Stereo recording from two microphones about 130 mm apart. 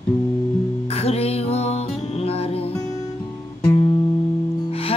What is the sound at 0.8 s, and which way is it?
Music, 50° left (ahead or behind).